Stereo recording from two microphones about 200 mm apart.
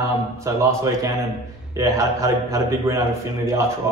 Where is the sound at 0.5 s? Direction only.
15° right (ahead or behind).